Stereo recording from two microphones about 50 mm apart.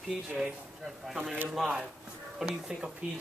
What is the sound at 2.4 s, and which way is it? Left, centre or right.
Speech, centre.